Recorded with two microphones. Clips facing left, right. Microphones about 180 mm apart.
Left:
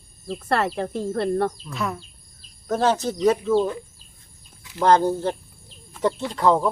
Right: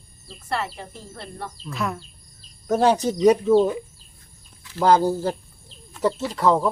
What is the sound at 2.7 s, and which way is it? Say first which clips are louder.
Speech: right 3 dB; 15° right (ahead or behind).